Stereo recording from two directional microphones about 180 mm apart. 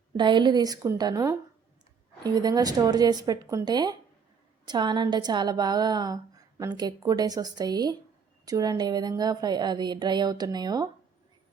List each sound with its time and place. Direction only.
0.2 s a woman's voice: 25° right (ahead or behind)